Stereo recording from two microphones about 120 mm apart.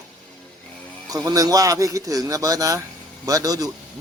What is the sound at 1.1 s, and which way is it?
A man's voice, 30° right (ahead or behind).